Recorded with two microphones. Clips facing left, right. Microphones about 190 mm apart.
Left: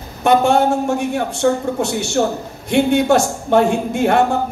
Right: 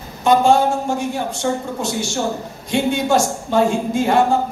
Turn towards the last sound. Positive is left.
turn(degrees=60)  # may be behind; listen again after turning